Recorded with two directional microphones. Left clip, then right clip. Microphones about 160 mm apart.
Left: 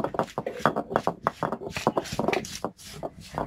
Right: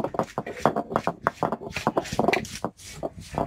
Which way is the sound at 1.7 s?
Centre (ahead or behind).